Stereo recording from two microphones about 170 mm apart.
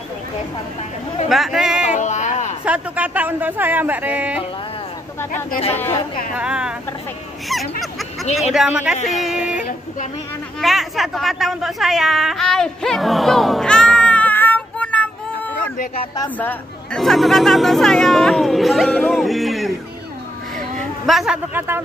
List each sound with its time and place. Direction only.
1.3 s a sound: centre (ahead or behind)
2.0 s a sound: 45° left (ahead or behind)
2.6 s speech: 10° right (ahead or behind)
6.3 s speech: 5° right (ahead or behind)
7.8 s a sound: centre (ahead or behind)
8.4 s speech: centre (ahead or behind)
8.9 s music: 45° left (ahead or behind)
9.2 s speech: 5° right (ahead or behind)
21.1 s speech: centre (ahead or behind)
21.5 s speech: 15° right (ahead or behind)